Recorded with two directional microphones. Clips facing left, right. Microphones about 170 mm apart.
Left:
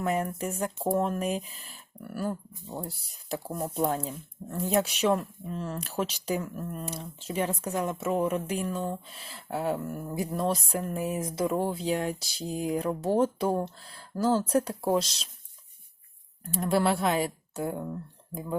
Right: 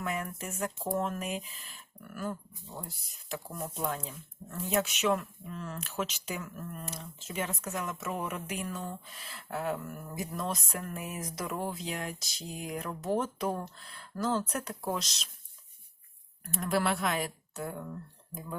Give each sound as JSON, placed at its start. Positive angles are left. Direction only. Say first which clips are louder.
{"t": 0.0, "sound": "speech", "louder": "left 7 dB", "side_deg": 40}
{"t": 16.4, "sound": "speech", "louder": "left 5 dB", "side_deg": 30}